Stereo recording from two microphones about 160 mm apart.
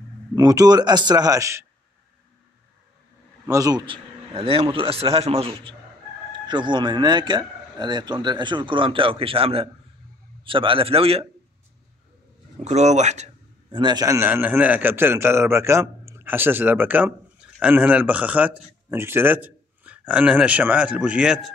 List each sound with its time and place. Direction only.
0.4 s speech: 25° right (ahead or behind)
3.4 s a man's voice: 20° right (ahead or behind); by 11.2 s 35° right (ahead or behind)
12.5 s speech: 45° right (ahead or behind)
13.7 s a man's voice: 30° right (ahead or behind); by 21.5 s 5° right (ahead or behind)